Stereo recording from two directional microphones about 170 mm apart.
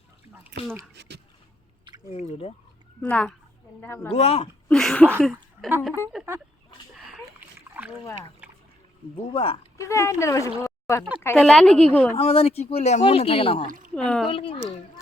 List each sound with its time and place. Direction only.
0.9 s speech: 80° right
1.9 s chewing: 30° right (ahead or behind)
3.0 s speech: 5° left (ahead or behind)
4.1 s speech: 35° left (ahead or behind)
4.7 s a sound: 5° left (ahead or behind)
5.2 s speech: 5° right (ahead or behind)
7.1 s splash: 10° right (ahead or behind)
9.3 s speech: 30° left (ahead or behind)
9.7 s speech: 15° left (ahead or behind)
11.3 s a woman's voice: 5° left (ahead or behind)
12.1 s speech: 35° left (ahead or behind)
13.7 s speech: 50° right (ahead or behind)
13.9 s a woman's voice: 5° left (ahead or behind)
14.3 s speech: 30° left (ahead or behind)